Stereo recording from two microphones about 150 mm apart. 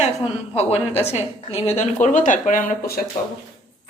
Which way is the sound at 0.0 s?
45° left (ahead or behind).